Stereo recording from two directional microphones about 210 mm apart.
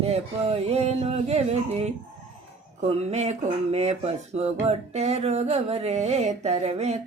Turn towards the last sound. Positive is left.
turn(degrees=-30)  # may be behind; listen again after turning